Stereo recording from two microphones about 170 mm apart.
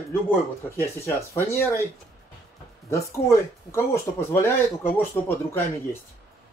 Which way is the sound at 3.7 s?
15° left (ahead or behind).